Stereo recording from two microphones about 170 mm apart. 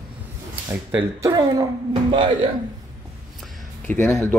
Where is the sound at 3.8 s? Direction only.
10° left (ahead or behind).